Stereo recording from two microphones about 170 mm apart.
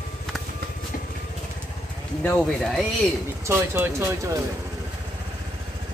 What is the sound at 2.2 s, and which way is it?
Speech, 5° left (ahead or behind).